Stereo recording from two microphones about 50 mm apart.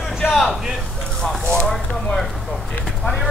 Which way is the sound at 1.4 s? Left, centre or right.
Centre.